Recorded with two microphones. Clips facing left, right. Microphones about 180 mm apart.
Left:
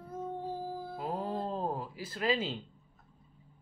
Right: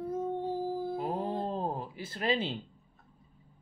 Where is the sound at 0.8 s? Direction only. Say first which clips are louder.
Right 4 dB; 20° right (ahead or behind).